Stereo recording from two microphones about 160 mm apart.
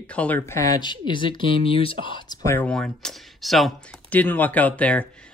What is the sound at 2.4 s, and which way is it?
Speech, 10° left (ahead or behind).